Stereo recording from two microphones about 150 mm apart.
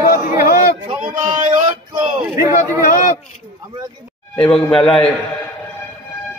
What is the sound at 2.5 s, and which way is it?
Speech, 65° left (ahead or behind).